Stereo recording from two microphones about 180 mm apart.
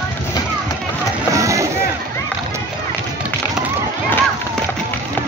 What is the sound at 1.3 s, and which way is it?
Music, 15° right (ahead or behind).